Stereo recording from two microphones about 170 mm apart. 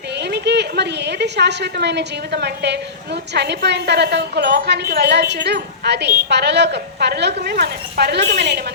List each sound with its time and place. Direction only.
0.2 s a woman's voice: 85° right